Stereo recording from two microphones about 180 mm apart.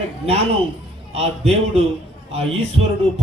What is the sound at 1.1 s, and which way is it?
A man's voice, 35° right (ahead or behind).